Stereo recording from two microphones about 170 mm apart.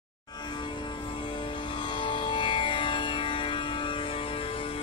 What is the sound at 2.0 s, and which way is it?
Music, 30° left (ahead or behind).